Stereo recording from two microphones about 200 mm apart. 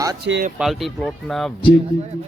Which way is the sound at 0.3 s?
60° right (ahead or behind).